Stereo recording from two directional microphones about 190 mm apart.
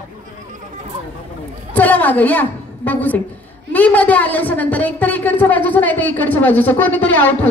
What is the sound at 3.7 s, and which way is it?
A woman's voice, 10° left (ahead or behind).